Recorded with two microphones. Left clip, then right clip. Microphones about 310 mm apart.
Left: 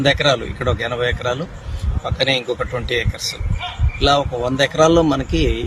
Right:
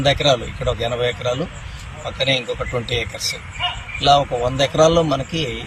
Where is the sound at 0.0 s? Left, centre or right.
Centre.